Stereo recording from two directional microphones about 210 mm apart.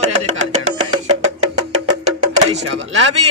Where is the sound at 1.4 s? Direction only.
35° right (ahead or behind).